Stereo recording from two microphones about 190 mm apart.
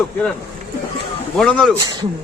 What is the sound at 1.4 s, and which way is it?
Speech, 5° left (ahead or behind).